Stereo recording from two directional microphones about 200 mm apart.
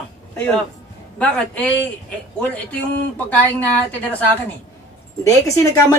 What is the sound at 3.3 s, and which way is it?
A woman's voice, 10° left (ahead or behind).